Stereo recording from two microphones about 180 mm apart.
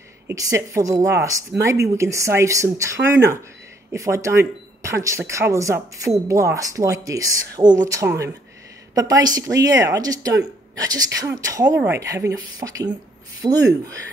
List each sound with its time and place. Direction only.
0.3 s speech: 15° right (ahead or behind)